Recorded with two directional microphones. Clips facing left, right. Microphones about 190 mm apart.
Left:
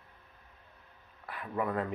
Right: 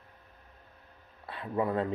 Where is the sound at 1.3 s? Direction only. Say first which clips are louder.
Right 3 dB; 25° right (ahead or behind).